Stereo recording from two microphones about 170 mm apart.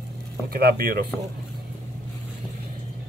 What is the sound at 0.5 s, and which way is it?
Speech, 60° right (ahead or behind).